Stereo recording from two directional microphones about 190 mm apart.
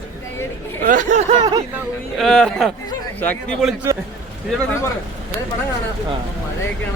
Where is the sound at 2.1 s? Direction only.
Centre (ahead or behind).